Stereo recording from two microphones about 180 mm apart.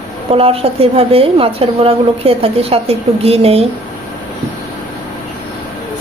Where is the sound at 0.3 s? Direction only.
30° right (ahead or behind).